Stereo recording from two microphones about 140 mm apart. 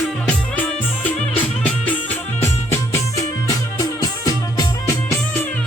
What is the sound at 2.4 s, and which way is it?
Music, 20° left (ahead or behind).